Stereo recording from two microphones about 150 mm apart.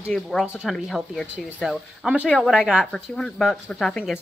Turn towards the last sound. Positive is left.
turn(degrees=5)  # may be behind; listen again after turning